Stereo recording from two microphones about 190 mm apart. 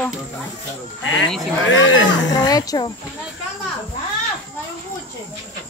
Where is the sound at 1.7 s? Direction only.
85° left.